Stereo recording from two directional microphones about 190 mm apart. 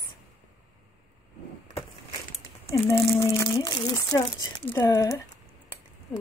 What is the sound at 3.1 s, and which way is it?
A woman's voice, 15° left (ahead or behind).